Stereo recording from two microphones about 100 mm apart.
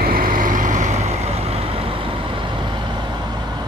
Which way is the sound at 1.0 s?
90° right.